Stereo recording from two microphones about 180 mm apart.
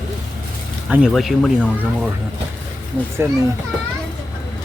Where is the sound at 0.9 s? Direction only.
Centre (ahead or behind).